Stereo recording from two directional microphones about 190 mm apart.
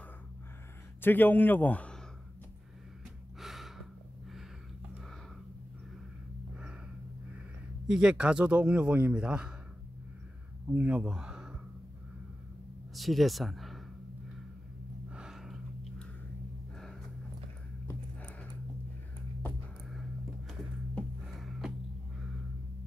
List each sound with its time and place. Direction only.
1.0 s a man's voice: 10° left (ahead or behind)
3.3 s gasp: centre (ahead or behind)
7.9 s a man's voice: 5° right (ahead or behind)
10.7 s speech: 5° right (ahead or behind)
12.9 s speech: centre (ahead or behind)
15.0 s gasp: 5° right (ahead or behind)
17.8 s a sound: 10° left (ahead or behind)
19.4 s music: centre (ahead or behind)
20.9 s a sound: centre (ahead or behind)